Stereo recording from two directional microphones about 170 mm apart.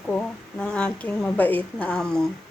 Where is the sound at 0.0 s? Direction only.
5° left (ahead or behind).